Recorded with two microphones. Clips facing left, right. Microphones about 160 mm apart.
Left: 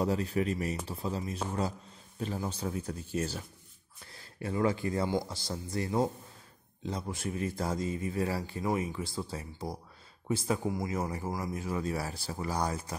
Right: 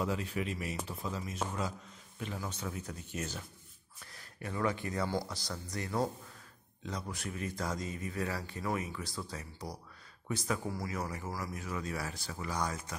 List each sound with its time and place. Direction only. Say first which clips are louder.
0.0 s speech: left 5 dB; 35° left (ahead or behind)
4.0 s a sound: left 5 dB; 30° left (ahead or behind)
5.3 s speech: left 5 dB; 25° left (ahead or behind)